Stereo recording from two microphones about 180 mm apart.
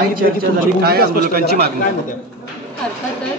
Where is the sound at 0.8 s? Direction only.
60° right (ahead or behind).